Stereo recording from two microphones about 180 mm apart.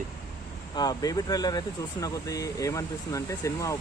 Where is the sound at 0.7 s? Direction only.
20° left (ahead or behind).